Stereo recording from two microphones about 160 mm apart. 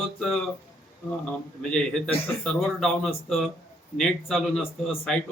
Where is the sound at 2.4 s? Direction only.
Centre (ahead or behind).